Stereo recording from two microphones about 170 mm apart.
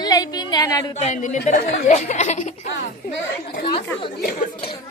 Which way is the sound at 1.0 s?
45° left (ahead or behind).